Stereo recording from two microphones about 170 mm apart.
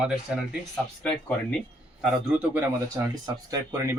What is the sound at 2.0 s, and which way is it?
Speech, 5° right (ahead or behind).